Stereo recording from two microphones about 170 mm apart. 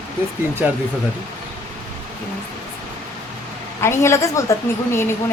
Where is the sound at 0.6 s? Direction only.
10° right (ahead or behind).